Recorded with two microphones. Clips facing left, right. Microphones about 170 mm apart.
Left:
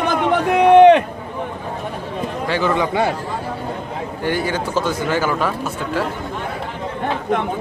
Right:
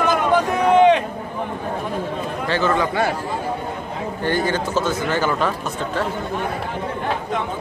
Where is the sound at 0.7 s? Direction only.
60° left (ahead or behind).